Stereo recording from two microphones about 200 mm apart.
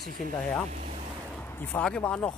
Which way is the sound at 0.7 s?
40° right (ahead or behind).